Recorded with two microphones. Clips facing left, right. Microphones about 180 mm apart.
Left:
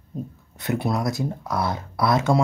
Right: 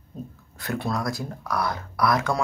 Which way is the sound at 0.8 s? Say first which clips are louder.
Left 3 dB; 20° left (ahead or behind).